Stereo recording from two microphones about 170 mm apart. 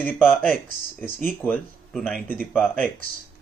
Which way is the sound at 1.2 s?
10° left (ahead or behind).